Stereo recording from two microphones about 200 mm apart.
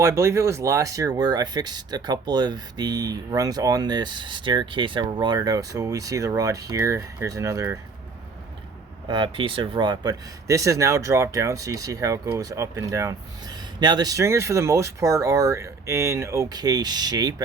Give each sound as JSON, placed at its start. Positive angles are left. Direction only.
{"t": 0.0, "sound": "speech", "side_deg": -15}
{"t": 9.0, "sound": "speech", "side_deg": -25}